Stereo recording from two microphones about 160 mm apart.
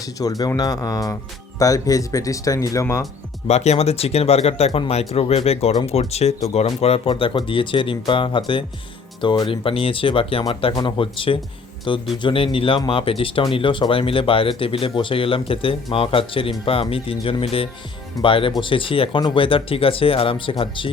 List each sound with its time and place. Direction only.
0.0 s speech: 20° left (ahead or behind)
3.4 s speech: 40° left (ahead or behind)